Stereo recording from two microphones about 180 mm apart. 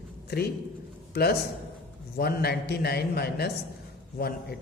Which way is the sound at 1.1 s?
65° left (ahead or behind).